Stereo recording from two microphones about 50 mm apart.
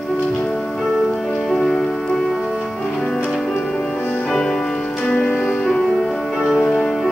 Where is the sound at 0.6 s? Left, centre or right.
Centre.